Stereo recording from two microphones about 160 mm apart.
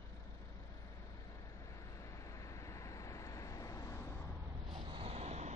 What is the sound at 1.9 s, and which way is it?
Vehicle, 20° left (ahead or behind).